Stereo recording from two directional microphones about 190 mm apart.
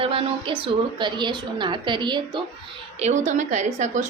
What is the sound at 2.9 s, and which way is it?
A woman's voice, 35° right (ahead or behind).